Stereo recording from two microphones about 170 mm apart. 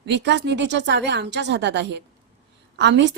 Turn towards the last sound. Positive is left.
turn(degrees=-90)